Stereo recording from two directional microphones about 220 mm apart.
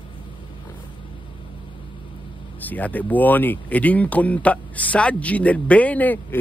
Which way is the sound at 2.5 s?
5° left (ahead or behind).